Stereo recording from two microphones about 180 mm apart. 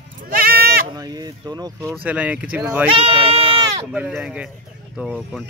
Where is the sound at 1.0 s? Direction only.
20° right (ahead or behind).